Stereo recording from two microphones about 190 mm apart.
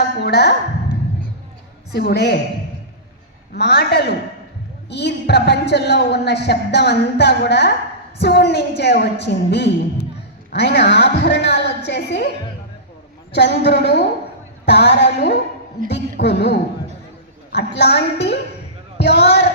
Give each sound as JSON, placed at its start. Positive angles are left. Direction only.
{"t": 0.2, "sound": "a sound", "side_deg": 60}
{"t": 1.9, "sound": "speech", "side_deg": 60}
{"t": 3.5, "sound": "speech", "side_deg": 60}
{"t": 13.3, "sound": "speech", "side_deg": 65}
{"t": 17.7, "sound": "speech", "side_deg": 65}